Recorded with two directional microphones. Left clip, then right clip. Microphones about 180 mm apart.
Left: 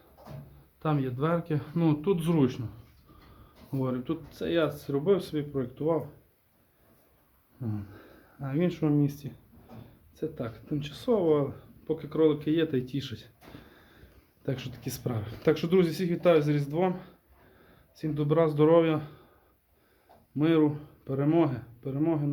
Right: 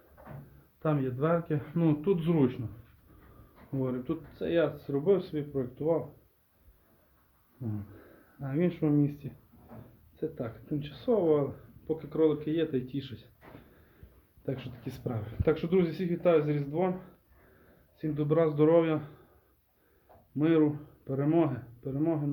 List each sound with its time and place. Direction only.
0.8 s speech: centre (ahead or behind)
3.7 s speech: 10° left (ahead or behind)
8.4 s speech: 5° left (ahead or behind); by 13.2 s 30° left (ahead or behind)
14.4 s speech: 25° left (ahead or behind)
20.4 s speech: 10° left (ahead or behind)